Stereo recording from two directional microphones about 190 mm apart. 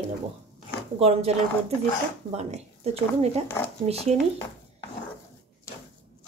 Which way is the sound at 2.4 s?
35° right (ahead or behind).